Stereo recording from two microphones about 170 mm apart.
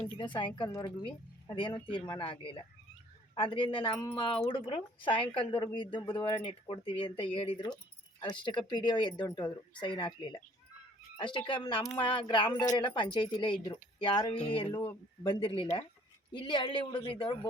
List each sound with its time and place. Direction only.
0.3 s speech: 30° left (ahead or behind)